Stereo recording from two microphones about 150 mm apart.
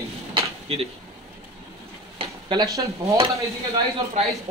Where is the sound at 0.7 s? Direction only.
40° right (ahead or behind).